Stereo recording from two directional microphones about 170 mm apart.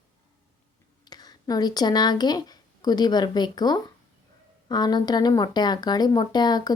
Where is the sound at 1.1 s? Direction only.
25° left (ahead or behind).